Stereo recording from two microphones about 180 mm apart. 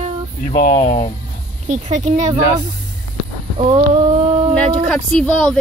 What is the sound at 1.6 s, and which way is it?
Speech, 40° right (ahead or behind).